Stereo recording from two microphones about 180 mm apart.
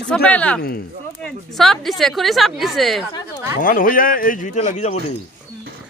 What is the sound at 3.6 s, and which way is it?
A man's voice, 50° left (ahead or behind).